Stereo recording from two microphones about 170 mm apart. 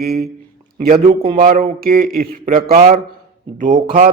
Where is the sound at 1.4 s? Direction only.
55° right (ahead or behind).